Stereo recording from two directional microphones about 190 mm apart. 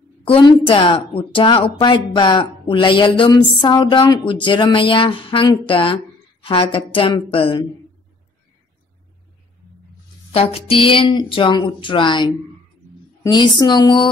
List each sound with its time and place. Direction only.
0.2 s a woman's voice: 25° left (ahead or behind)
10.3 s a woman's voice: 30° left (ahead or behind)